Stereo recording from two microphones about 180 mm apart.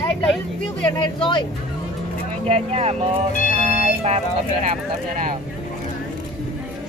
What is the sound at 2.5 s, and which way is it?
Speech, 35° right (ahead or behind).